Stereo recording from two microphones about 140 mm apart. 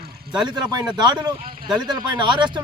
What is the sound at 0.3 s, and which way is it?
Speech, 30° right (ahead or behind).